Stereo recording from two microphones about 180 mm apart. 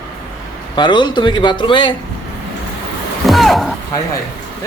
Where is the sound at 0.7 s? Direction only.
25° left (ahead or behind).